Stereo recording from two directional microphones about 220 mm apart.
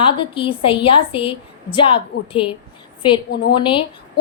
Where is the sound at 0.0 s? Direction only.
25° left (ahead or behind).